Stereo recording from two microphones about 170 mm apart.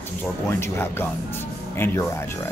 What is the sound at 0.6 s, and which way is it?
Speech, 15° left (ahead or behind).